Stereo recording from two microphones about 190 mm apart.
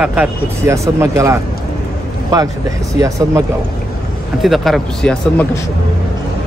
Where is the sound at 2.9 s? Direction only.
15° right (ahead or behind).